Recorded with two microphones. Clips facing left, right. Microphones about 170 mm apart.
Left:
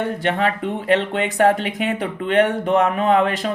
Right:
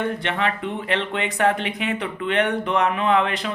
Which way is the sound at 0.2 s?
45° left (ahead or behind).